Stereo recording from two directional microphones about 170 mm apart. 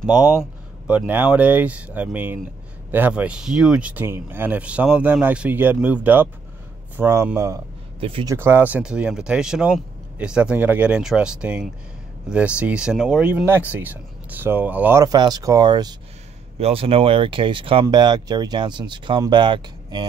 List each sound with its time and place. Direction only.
0.0 s speech: 5° right (ahead or behind)
8.0 s speech: 30° right (ahead or behind)
8.3 s speech: 15° right (ahead or behind)
16.5 s speech: 35° right (ahead or behind)